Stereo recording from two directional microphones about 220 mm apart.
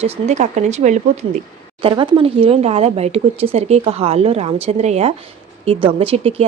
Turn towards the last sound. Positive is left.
turn(degrees=-25)  # may be behind; listen again after turning